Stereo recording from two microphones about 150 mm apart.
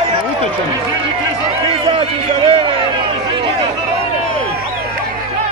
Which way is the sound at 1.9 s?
35° right (ahead or behind).